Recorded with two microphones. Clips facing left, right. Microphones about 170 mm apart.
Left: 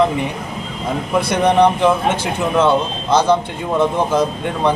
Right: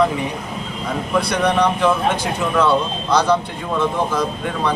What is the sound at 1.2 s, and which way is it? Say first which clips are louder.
Speech: left 4 dB; 20° left (ahead or behind).